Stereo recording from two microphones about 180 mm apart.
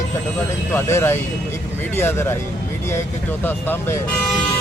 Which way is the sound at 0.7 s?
15° left (ahead or behind).